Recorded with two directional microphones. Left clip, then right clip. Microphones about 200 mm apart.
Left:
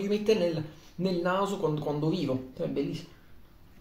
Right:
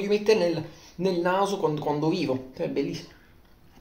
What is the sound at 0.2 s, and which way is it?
Speech, 5° left (ahead or behind).